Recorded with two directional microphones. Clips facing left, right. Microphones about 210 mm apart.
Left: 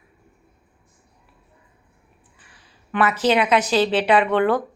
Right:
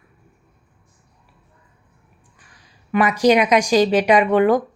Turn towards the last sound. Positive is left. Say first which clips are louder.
# right 3 dB
turn(degrees=-10)  # may be behind; listen again after turning